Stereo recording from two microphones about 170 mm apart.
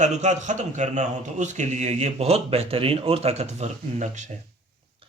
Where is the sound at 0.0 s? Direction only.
45° right (ahead or behind).